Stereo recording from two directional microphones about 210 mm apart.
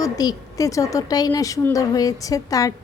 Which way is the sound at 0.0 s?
15° left (ahead or behind).